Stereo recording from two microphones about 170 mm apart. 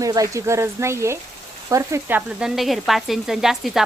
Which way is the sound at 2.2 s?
5° right (ahead or behind).